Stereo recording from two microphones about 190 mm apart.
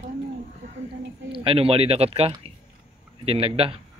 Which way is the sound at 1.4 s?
30° right (ahead or behind).